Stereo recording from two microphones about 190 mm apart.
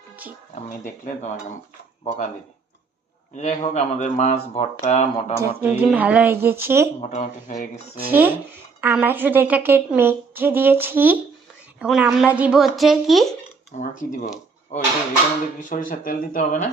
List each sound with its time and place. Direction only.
1.0 s speech: 40° left (ahead or behind)
3.3 s speech: 40° left (ahead or behind)
5.4 s a woman's voice: 10° right (ahead or behind)
7.0 s speech: 40° left (ahead or behind)
8.1 s a woman's voice: 10° right (ahead or behind)
13.7 s speech: 40° left (ahead or behind)